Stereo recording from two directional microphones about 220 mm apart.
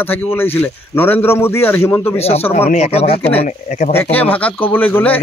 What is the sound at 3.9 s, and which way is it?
Speech, 10° left (ahead or behind).